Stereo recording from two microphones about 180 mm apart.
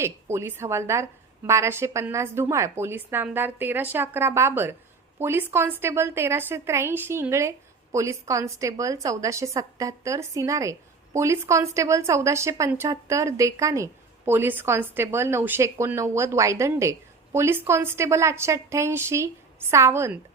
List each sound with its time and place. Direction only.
0.0 s a woman's voice: 15° right (ahead or behind)